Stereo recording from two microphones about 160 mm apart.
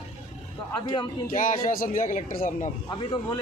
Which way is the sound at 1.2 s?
60° left (ahead or behind).